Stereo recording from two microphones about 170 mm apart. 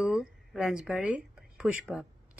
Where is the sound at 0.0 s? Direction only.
5° right (ahead or behind).